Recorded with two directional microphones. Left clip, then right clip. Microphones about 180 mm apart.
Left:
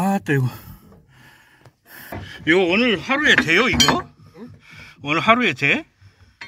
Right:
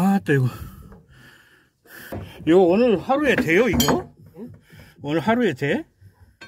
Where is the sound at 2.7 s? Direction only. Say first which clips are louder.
Even; 5° left (ahead or behind).